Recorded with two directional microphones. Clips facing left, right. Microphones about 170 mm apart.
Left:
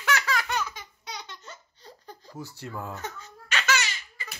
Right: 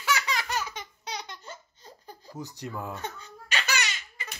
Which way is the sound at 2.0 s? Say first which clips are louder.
Right 1 dB; 15° right (ahead or behind).